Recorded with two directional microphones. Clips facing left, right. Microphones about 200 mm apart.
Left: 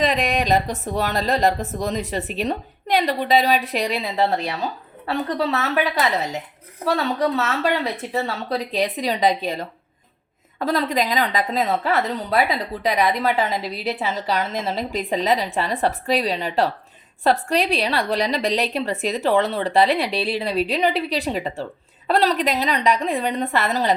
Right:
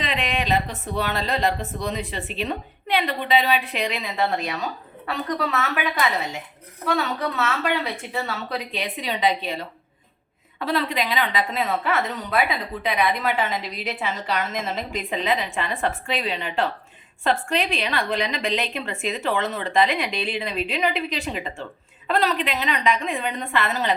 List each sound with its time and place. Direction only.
0.0 s a woman's voice: 40° left (ahead or behind)